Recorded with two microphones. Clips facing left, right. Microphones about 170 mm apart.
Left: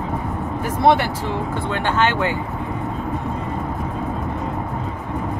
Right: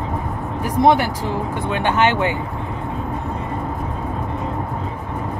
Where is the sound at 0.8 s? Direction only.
15° right (ahead or behind).